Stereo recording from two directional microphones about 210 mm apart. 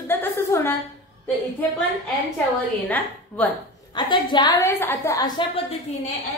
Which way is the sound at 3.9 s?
20° left (ahead or behind).